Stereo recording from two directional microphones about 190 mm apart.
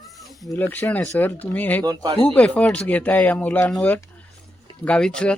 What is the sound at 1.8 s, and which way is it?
Speech, 20° right (ahead or behind).